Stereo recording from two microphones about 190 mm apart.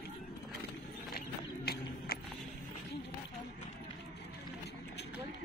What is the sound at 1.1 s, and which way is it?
Horse, 55° left (ahead or behind).